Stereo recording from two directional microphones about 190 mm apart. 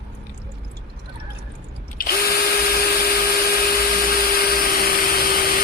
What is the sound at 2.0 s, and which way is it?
Drill, 50° left (ahead or behind).